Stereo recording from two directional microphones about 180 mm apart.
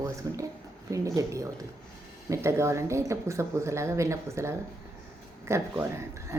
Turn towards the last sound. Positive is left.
turn(degrees=-15)  # may be behind; listen again after turning